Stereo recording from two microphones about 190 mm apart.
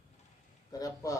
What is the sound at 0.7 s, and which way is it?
Speech, 20° left (ahead or behind).